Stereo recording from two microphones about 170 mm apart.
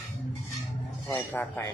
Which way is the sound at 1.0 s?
15° left (ahead or behind).